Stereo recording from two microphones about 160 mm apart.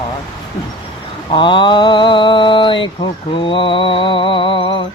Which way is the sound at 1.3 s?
30° left (ahead or behind).